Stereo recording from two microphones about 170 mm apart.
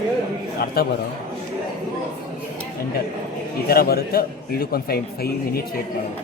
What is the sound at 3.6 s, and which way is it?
A man's voice, 65° left (ahead or behind).